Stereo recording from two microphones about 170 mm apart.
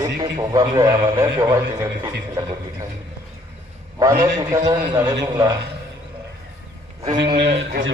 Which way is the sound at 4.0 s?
20° right (ahead or behind).